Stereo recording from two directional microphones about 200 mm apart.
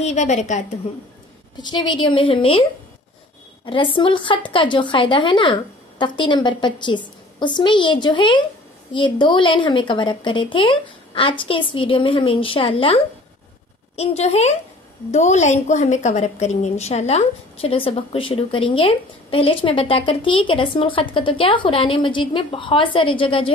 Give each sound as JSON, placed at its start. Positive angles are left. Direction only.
{"t": 0.0, "sound": "a woman's voice", "side_deg": 35}
{"t": 1.6, "sound": "a woman's voice", "side_deg": 20}
{"t": 3.6, "sound": "a woman's voice", "side_deg": 25}